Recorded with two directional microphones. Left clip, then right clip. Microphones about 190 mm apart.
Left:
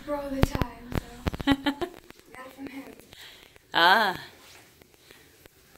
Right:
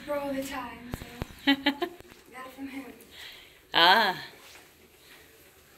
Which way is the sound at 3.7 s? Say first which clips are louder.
Even; 20° left (ahead or behind).